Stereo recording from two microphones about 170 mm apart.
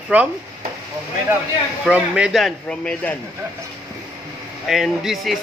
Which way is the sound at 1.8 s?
5° right (ahead or behind).